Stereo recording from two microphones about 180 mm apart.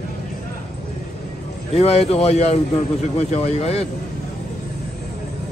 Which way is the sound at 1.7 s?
35° left (ahead or behind).